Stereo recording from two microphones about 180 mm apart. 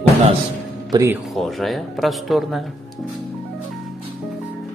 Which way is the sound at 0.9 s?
20° right (ahead or behind).